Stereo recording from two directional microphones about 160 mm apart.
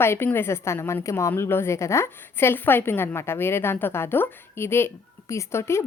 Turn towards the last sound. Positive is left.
turn(degrees=15)  # may be behind; listen again after turning